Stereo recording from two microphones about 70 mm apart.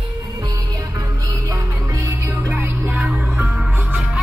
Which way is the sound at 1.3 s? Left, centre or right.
Right.